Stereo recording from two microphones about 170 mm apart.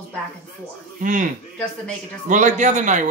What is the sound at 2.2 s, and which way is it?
Speech, 45° right (ahead or behind).